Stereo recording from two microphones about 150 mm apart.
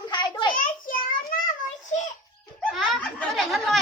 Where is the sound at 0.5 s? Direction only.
70° left (ahead or behind).